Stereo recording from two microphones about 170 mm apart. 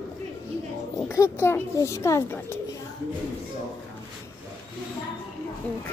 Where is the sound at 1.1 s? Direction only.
15° left (ahead or behind).